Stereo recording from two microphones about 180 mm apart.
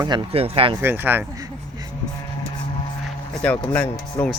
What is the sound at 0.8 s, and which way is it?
Speech, 10° right (ahead or behind).